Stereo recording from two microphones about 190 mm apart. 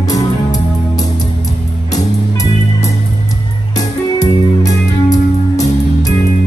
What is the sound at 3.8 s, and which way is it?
Music, 20° left (ahead or behind).